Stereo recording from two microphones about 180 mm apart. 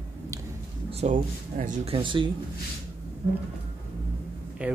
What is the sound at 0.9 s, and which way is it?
Speech, 45° right (ahead or behind).